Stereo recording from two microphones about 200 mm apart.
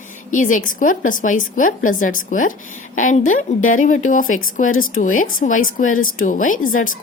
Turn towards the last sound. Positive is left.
turn(degrees=45)  # may be behind; listen again after turning